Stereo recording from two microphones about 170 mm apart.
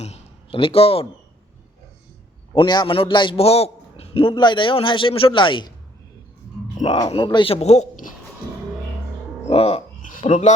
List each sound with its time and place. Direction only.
0.0 s speech: 35° left (ahead or behind)
2.6 s a man's voice: 30° left (ahead or behind)
6.8 s speech: 30° left (ahead or behind); by 8.1 s 45° left (ahead or behind)
9.5 s speech: 35° left (ahead or behind)
10.2 s speech: 45° left (ahead or behind)